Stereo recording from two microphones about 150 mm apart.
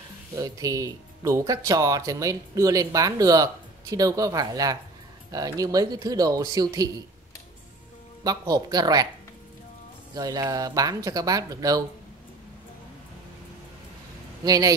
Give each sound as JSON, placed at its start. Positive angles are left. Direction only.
{"t": 0.4, "sound": "speech", "side_deg": -25}
{"t": 8.2, "sound": "speech", "side_deg": -25}
{"t": 10.1, "sound": "speech", "side_deg": -25}
{"t": 14.4, "sound": "speech", "side_deg": -25}